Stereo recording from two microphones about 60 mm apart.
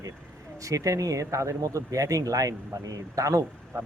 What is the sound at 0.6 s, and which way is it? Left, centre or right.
Speech, right.